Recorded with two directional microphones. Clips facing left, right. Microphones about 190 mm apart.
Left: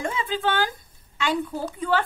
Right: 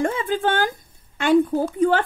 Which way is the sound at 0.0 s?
50° right (ahead or behind).